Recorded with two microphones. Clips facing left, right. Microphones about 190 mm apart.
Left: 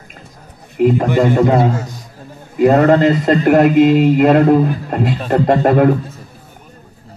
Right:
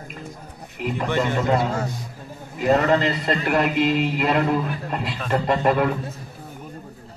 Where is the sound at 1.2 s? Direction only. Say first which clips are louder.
Left 9 dB; 50° left (ahead or behind).